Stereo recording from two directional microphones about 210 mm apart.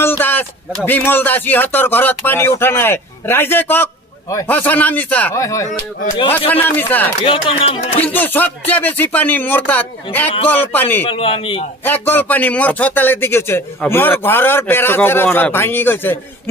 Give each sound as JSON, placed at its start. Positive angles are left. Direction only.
{"t": 0.0, "sound": "a man's voice", "side_deg": 10}
{"t": 7.2, "sound": "speech", "side_deg": 25}
{"t": 8.0, "sound": "a man's voice", "side_deg": 10}
{"t": 11.1, "sound": "speech", "side_deg": 25}
{"t": 11.8, "sound": "a man's voice", "side_deg": 10}